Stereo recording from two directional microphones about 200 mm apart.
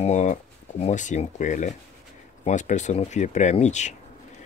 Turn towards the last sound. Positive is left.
turn(degrees=35)  # may be behind; listen again after turning